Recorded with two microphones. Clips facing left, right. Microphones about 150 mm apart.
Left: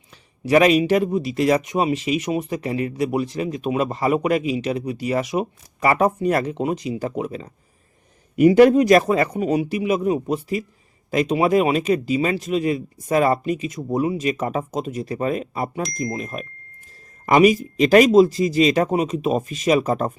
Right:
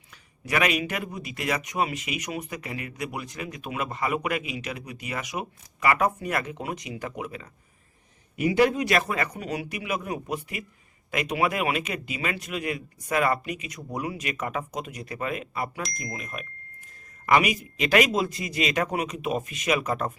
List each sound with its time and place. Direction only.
0.1 s speech: 30° left (ahead or behind)
8.4 s speech: 45° left (ahead or behind)
15.8 s speech: centre (ahead or behind)
16.1 s speech: 35° left (ahead or behind)